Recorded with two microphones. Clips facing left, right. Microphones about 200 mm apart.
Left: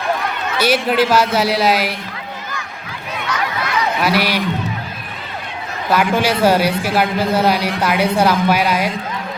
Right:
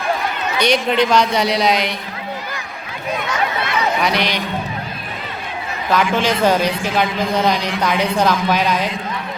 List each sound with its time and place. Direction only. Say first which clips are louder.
0.6 s speech: left 1 dB; 5° left (ahead or behind)
4.0 s a man's voice: left 2 dB; 5° left (ahead or behind)
5.9 s a man's voice: left 1 dB; 10° left (ahead or behind)